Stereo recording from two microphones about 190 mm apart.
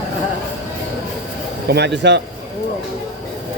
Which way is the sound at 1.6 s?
60° right (ahead or behind).